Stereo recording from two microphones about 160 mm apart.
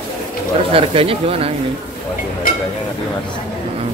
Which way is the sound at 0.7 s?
35° right (ahead or behind).